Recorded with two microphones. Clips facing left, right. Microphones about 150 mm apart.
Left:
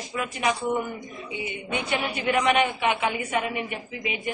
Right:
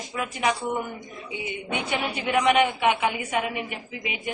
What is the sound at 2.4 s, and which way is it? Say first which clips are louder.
A woman's voice: right 3 dB; 15° right (ahead or behind).